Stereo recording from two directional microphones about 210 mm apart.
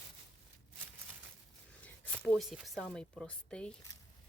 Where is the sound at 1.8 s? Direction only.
5° left (ahead or behind).